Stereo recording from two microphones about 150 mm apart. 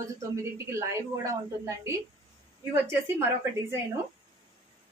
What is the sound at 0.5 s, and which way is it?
A woman's voice, 20° right (ahead or behind).